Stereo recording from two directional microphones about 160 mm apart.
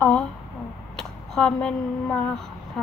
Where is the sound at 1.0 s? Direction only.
5° left (ahead or behind).